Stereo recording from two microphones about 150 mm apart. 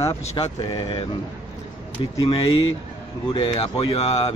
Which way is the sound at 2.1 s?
35° left (ahead or behind).